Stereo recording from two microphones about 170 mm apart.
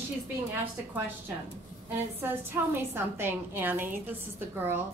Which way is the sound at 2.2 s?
15° right (ahead or behind).